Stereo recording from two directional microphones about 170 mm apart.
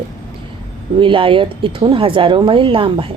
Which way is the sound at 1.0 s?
30° right (ahead or behind).